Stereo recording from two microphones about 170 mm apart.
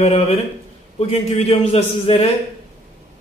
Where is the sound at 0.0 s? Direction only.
35° left (ahead or behind).